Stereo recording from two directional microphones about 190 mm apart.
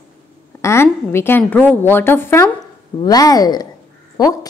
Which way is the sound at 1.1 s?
10° left (ahead or behind).